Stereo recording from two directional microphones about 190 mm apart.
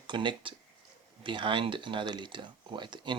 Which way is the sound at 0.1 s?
25° right (ahead or behind).